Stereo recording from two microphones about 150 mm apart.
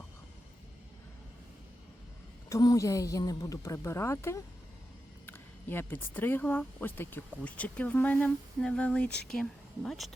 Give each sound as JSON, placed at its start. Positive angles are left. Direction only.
{"t": 2.5, "sound": "speech", "side_deg": 25}